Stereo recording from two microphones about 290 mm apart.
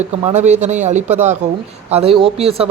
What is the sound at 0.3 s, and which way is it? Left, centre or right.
Speech, right.